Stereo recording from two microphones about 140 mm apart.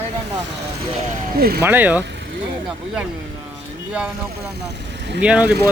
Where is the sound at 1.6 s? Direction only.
15° right (ahead or behind).